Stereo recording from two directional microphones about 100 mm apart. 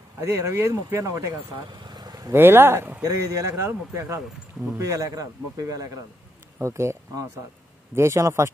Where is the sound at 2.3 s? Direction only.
20° right (ahead or behind).